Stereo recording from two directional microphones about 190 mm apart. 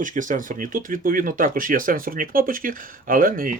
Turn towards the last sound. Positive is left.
turn(degrees=-50)  # may be behind; listen again after turning